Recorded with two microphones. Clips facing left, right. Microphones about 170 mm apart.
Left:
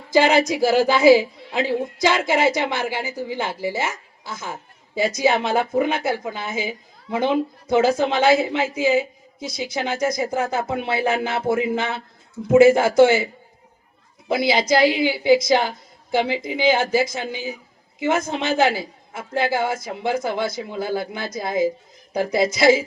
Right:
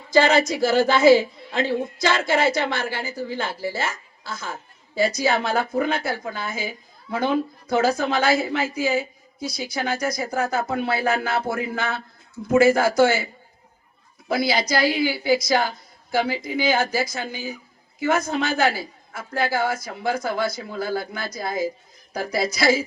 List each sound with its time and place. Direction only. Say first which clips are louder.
0.1 s a woman's voice: left 1 dB; 15° left (ahead or behind)
14.3 s a woman's voice: left 3 dB; 20° left (ahead or behind)